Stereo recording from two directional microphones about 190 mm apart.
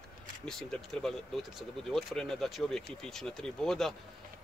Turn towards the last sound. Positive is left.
turn(degrees=0)  # may be behind; listen again after turning